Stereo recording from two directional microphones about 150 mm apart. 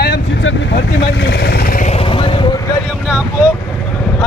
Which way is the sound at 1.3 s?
90° left.